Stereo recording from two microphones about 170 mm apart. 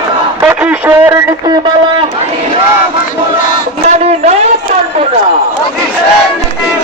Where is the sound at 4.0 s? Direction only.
40° right (ahead or behind).